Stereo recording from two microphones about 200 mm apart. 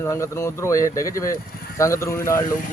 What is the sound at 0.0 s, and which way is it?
Speech, 15° left (ahead or behind).